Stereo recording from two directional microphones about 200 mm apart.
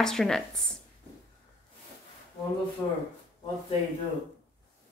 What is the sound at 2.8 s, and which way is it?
Speech, 15° left (ahead or behind).